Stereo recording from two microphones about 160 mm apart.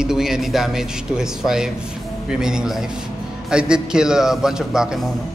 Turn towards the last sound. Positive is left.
turn(degrees=-5)  # may be behind; listen again after turning